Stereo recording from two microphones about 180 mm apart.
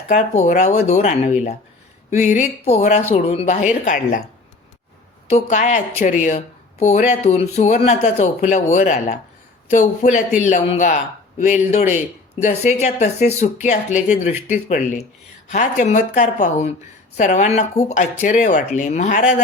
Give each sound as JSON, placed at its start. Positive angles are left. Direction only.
{"t": 0.1, "sound": "speech", "side_deg": 45}
{"t": 2.6, "sound": "speech", "side_deg": 40}
{"t": 5.3, "sound": "speech", "side_deg": 40}
{"t": 14.3, "sound": "speech", "side_deg": -10}
{"t": 14.7, "sound": "speech", "side_deg": 45}